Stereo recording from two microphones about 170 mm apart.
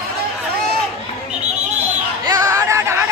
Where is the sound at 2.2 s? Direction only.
20° right (ahead or behind).